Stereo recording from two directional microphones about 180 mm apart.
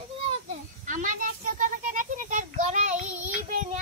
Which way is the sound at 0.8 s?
45° right (ahead or behind).